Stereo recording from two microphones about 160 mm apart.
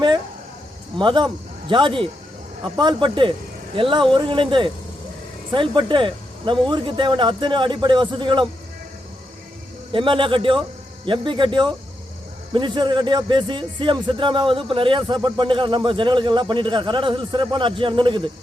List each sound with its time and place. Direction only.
0.9 s a man's voice: 30° right (ahead or behind)
9.9 s a man's voice: 30° right (ahead or behind)